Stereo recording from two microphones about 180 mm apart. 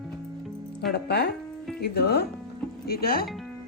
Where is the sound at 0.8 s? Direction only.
65° left (ahead or behind).